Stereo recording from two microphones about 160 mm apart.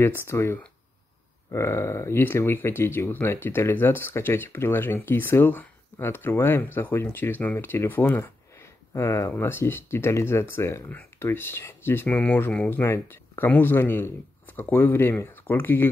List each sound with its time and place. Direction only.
0.0 s speech: 15° left (ahead or behind)